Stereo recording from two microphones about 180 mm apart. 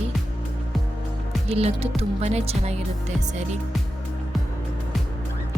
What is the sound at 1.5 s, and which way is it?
Speech, 35° right (ahead or behind).